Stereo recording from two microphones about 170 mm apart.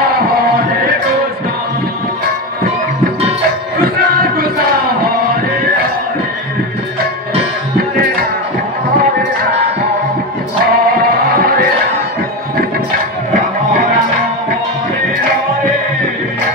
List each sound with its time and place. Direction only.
4.0 s music: 65° right (ahead or behind)
7.7 s music: 60° right (ahead or behind)
10.6 s music: 60° right (ahead or behind)